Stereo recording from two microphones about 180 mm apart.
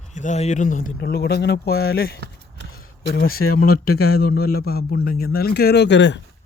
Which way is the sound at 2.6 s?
60° left (ahead or behind).